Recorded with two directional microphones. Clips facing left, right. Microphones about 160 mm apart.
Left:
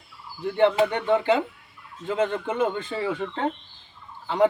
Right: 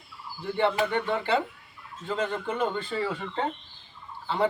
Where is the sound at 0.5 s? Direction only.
20° left (ahead or behind).